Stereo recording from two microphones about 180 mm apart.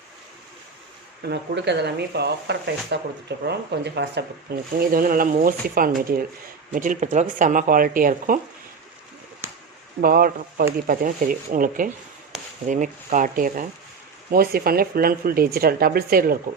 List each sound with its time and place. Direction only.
1.2 s speech: 70° right (ahead or behind)
4.8 s speech: 55° right (ahead or behind)
10.0 s speech: 55° right (ahead or behind)